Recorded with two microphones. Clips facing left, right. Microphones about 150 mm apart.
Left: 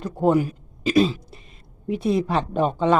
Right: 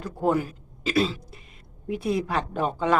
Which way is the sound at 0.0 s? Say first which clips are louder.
Left 5 dB; 20° left (ahead or behind).